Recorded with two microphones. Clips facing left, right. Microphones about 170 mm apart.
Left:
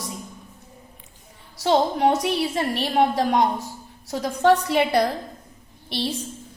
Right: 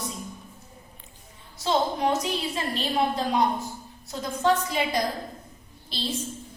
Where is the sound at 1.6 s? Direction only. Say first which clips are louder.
Left 5 dB; 70° left (ahead or behind).